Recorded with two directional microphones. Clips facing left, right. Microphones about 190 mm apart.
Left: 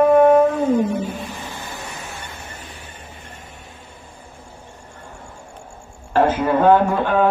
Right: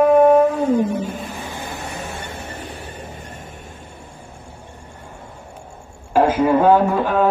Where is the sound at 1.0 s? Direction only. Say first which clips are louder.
Even; 50° right (ahead or behind).